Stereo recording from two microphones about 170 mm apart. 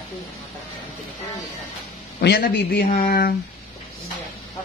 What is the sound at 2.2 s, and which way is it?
Speech, 70° left (ahead or behind).